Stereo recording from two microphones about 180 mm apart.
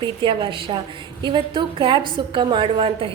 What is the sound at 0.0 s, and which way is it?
A woman's voice, 25° right (ahead or behind).